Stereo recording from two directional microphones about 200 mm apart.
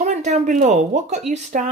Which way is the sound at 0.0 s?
35° right (ahead or behind).